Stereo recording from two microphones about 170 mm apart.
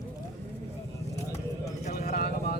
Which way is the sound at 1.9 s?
65° left (ahead or behind).